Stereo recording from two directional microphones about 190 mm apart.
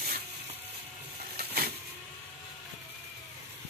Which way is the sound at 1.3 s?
55° right (ahead or behind).